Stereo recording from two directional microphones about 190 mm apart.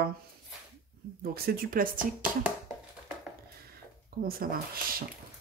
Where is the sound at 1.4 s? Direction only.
50° right (ahead or behind).